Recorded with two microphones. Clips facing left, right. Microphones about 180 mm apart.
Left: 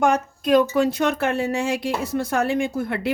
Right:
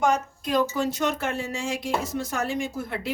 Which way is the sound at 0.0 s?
60° left (ahead or behind).